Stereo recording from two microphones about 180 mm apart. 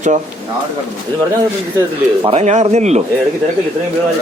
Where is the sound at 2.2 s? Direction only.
35° right (ahead or behind).